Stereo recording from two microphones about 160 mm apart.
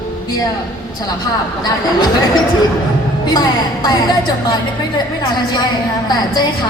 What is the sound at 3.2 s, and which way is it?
A woman's voice, 25° left (ahead or behind).